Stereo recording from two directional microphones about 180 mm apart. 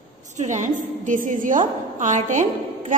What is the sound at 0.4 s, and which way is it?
A woman's voice, 40° right (ahead or behind).